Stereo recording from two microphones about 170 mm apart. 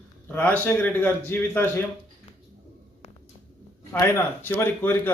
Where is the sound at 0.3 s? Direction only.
10° left (ahead or behind).